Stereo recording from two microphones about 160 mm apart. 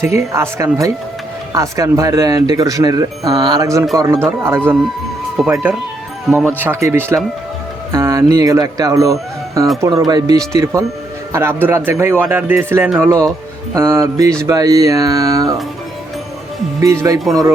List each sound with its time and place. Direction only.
0.0 s speech: 15° right (ahead or behind)
5.4 s speech: 5° right (ahead or behind)
6.6 s speech: 15° right (ahead or behind)
16.8 s speech: 20° right (ahead or behind)